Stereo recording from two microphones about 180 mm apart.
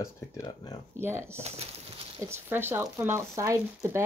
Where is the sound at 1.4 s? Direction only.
35° right (ahead or behind).